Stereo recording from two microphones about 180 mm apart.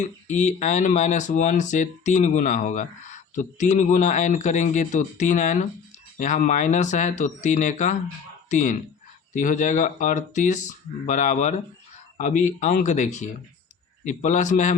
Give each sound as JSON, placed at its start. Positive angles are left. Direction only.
{"t": 0.0, "sound": "speech", "side_deg": 40}